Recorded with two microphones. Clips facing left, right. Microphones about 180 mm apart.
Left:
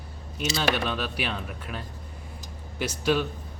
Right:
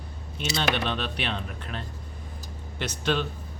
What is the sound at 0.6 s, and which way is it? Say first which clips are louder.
Speech: even; 5° left (ahead or behind).